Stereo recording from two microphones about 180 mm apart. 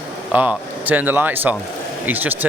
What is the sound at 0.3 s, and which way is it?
Speech, 10° right (ahead or behind).